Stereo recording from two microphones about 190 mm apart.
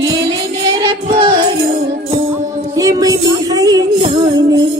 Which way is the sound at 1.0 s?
25° right (ahead or behind).